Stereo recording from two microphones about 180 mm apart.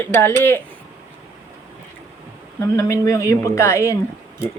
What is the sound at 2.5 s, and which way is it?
Speech, 15° left (ahead or behind).